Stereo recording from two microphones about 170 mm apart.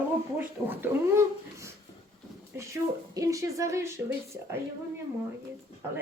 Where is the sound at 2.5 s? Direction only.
20° right (ahead or behind).